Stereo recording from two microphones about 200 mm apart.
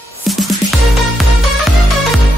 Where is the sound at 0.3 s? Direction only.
Centre (ahead or behind).